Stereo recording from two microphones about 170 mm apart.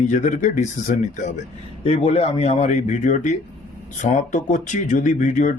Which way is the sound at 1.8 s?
35° left (ahead or behind).